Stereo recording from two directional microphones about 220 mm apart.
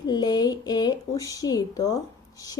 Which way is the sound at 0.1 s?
20° left (ahead or behind).